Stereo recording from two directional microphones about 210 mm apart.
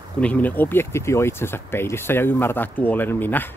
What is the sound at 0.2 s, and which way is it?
Speech, 5° left (ahead or behind).